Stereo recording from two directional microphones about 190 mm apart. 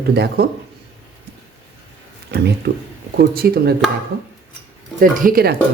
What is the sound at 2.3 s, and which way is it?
Speech, 60° right (ahead or behind).